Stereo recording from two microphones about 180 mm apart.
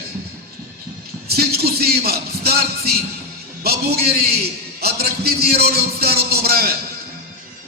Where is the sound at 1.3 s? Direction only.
60° right (ahead or behind).